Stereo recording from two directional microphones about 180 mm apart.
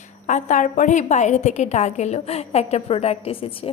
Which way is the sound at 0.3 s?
45° left (ahead or behind).